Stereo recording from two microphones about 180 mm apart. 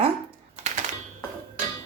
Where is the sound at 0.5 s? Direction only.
40° right (ahead or behind).